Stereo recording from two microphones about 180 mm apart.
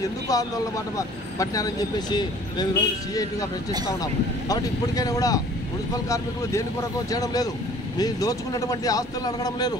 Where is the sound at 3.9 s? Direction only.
20° left (ahead or behind).